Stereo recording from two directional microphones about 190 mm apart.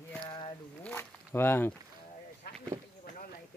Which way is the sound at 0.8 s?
10° left (ahead or behind).